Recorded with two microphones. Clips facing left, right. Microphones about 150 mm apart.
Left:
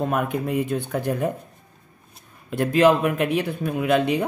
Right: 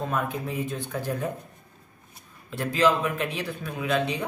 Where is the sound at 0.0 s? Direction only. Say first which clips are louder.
Left 5 dB; 60° left (ahead or behind).